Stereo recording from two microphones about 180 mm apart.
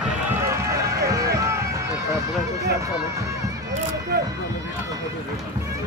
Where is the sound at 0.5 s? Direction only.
15° right (ahead or behind).